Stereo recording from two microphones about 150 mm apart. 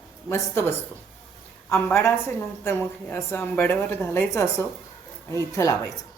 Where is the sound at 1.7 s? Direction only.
15° left (ahead or behind).